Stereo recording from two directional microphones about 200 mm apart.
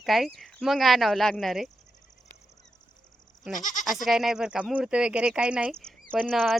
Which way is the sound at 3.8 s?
Centre (ahead or behind).